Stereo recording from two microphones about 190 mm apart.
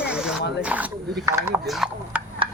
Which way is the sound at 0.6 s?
5° right (ahead or behind).